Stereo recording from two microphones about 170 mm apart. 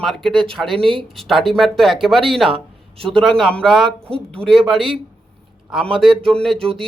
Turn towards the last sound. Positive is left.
turn(degrees=0)  # may be behind; listen again after turning